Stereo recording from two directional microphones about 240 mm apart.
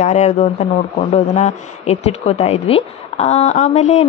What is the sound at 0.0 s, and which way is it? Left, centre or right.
Speech, left.